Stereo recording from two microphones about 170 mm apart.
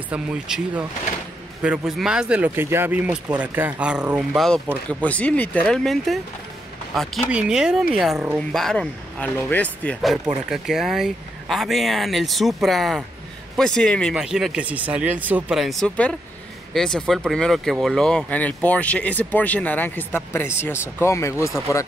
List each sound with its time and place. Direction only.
0.1 s speech: 5° right (ahead or behind)
7.2 s speech: 5° right (ahead or behind); by 21.8 s 20° left (ahead or behind)